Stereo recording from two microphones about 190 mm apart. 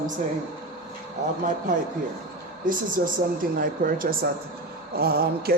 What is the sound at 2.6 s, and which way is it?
Speech, 45° right (ahead or behind).